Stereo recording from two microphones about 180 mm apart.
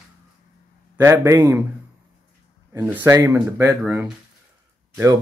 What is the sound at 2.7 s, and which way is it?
Speech, 10° right (ahead or behind).